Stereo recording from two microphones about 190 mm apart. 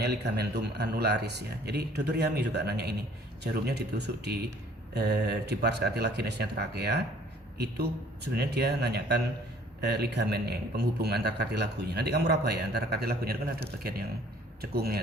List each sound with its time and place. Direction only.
0.0 s a man's voice: 60° right (ahead or behind)